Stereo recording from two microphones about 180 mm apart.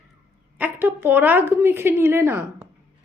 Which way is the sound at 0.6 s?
10° right (ahead or behind).